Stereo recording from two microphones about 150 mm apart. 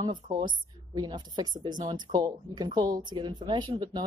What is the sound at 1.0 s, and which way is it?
A woman's voice, 25° right (ahead or behind).